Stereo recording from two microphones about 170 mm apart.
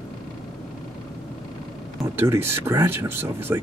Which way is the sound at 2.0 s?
15° right (ahead or behind).